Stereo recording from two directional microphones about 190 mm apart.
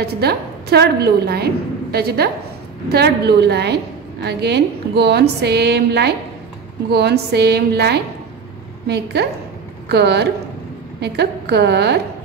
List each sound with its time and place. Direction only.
0.0 s a woman's voice: 55° right (ahead or behind)